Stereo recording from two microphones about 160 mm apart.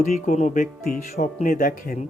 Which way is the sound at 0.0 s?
45° left (ahead or behind).